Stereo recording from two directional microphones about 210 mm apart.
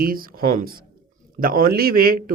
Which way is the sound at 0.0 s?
45° right (ahead or behind).